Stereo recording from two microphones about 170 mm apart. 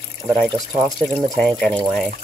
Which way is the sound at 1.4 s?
5° left (ahead or behind).